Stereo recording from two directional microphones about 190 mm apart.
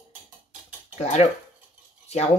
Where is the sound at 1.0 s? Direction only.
35° left (ahead or behind).